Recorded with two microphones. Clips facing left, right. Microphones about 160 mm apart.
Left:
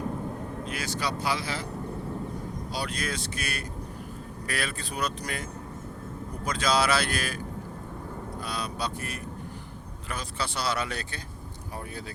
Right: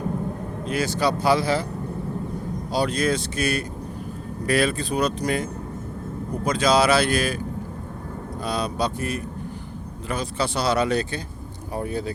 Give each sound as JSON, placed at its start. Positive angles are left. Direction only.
{"t": 0.6, "sound": "speech", "side_deg": -30}
{"t": 2.7, "sound": "speech", "side_deg": -30}
{"t": 6.5, "sound": "speech", "side_deg": -15}
{"t": 8.4, "sound": "speech", "side_deg": -25}